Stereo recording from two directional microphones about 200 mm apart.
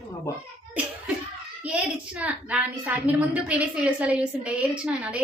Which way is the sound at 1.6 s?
5° right (ahead or behind).